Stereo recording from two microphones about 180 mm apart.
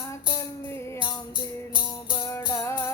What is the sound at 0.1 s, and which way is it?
Music, 15° left (ahead or behind).